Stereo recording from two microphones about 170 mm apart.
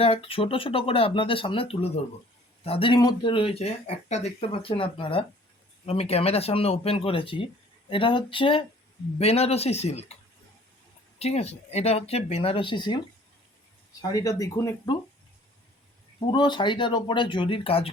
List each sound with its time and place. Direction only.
0.0 s speech: 35° left (ahead or behind)
11.2 s speech: 35° left (ahead or behind)
14.1 s speech: 20° left (ahead or behind)
16.2 s speech: 25° left (ahead or behind)